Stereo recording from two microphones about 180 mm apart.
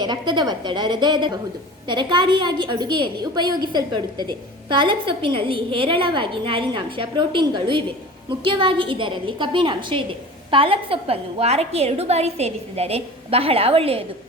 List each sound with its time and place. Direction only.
0.0 s a woman's voice: 25° right (ahead or behind)